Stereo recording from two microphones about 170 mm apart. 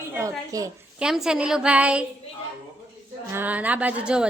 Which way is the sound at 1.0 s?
5° right (ahead or behind).